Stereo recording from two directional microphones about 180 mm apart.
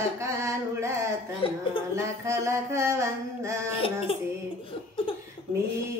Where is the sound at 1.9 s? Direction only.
15° right (ahead or behind).